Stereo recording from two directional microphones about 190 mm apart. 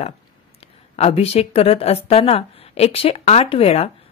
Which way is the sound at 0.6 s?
30° left (ahead or behind).